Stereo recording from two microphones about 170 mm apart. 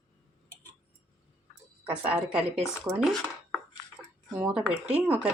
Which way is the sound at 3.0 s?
Centre (ahead or behind).